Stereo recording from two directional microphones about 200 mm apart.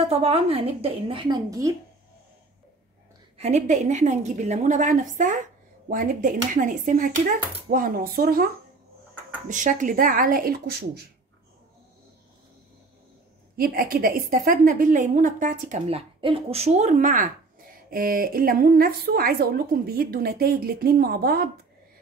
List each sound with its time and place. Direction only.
0.1 s a woman's voice: 30° right (ahead or behind)
3.3 s a woman's voice: 35° right (ahead or behind)
9.5 s speech: 40° right (ahead or behind)
13.6 s speech: 50° right (ahead or behind)
15.9 s speech: 25° right (ahead or behind); by 21.5 s 50° right (ahead or behind)